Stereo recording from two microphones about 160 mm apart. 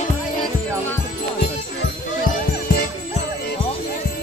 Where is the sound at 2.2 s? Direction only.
70° left (ahead or behind).